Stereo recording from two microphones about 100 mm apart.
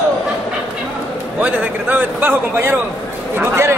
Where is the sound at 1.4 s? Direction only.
20° right (ahead or behind).